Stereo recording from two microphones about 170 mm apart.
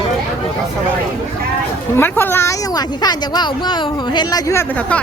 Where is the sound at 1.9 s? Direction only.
10° left (ahead or behind).